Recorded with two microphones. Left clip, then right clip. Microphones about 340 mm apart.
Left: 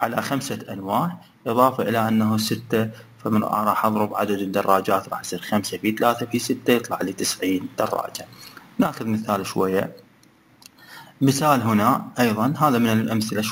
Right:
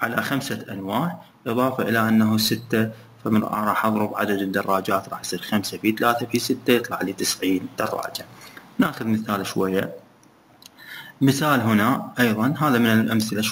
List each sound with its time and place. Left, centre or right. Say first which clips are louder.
0.0 s speech: even; centre
11.2 s speech: left 1 dB; centre